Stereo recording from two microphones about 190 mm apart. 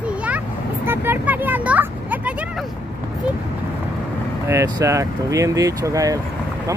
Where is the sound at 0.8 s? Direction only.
10° right (ahead or behind).